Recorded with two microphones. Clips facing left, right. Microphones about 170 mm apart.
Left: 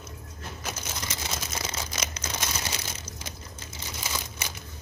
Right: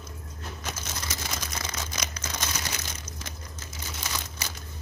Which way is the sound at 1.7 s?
25° left (ahead or behind).